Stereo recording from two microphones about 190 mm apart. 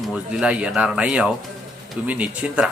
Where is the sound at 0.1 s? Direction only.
5° right (ahead or behind).